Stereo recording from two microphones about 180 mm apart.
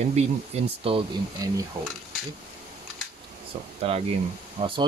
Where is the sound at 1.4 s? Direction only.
20° right (ahead or behind).